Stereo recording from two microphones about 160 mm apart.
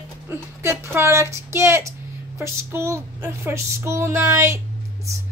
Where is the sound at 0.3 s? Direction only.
15° right (ahead or behind).